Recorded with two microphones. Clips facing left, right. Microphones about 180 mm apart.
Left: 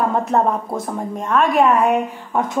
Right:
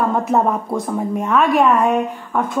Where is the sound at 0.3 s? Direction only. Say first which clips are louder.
Right 1 dB; centre (ahead or behind).